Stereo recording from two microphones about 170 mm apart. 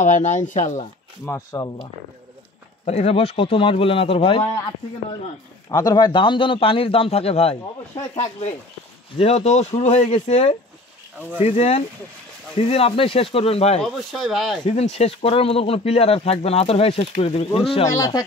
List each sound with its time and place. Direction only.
0.0 s speech: 45° left (ahead or behind)
1.2 s speech: 15° left (ahead or behind)
2.8 s speech: 40° left (ahead or behind)
13.7 s speech: centre (ahead or behind)
14.7 s speech: 40° left (ahead or behind)
17.8 s speech: 20° left (ahead or behind)